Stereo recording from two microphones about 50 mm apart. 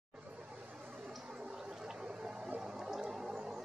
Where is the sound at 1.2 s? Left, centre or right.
Centre.